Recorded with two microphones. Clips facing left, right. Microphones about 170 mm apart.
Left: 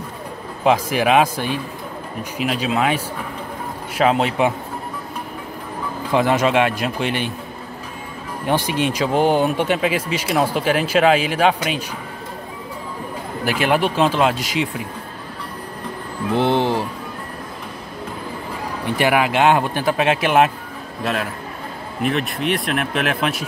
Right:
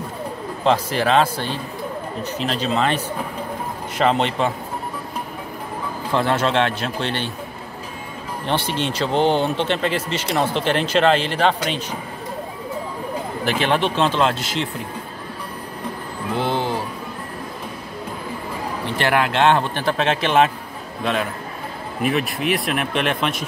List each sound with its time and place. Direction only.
0.7 s speech: 10° left (ahead or behind)
4.0 s speech: 5° left (ahead or behind)
6.1 s speech: 10° left (ahead or behind)
8.5 s speech: 10° left (ahead or behind)
13.5 s speech: 10° left (ahead or behind)
16.3 s speech: 25° left (ahead or behind)
18.9 s speech: 10° left (ahead or behind)